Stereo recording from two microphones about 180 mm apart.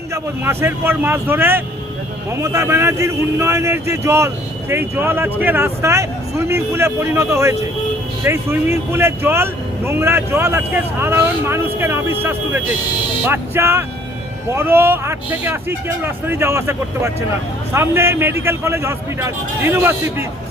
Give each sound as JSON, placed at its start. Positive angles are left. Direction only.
{"t": 0.1, "sound": "speech", "side_deg": -15}